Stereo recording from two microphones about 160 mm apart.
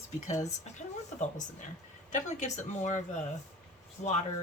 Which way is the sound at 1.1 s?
50° left (ahead or behind).